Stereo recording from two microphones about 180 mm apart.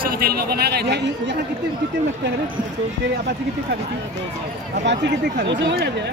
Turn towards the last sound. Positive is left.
turn(degrees=-70)  # may be behind; listen again after turning